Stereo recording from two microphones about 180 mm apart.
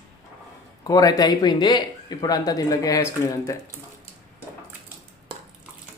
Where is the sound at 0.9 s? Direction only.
20° left (ahead or behind).